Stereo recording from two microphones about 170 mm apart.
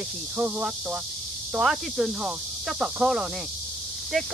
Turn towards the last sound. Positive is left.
turn(degrees=0)  # may be behind; listen again after turning